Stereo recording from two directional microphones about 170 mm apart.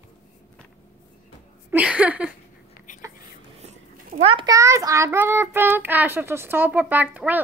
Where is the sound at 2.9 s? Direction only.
45° left (ahead or behind).